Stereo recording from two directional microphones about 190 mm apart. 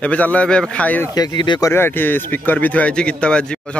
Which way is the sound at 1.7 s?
10° left (ahead or behind).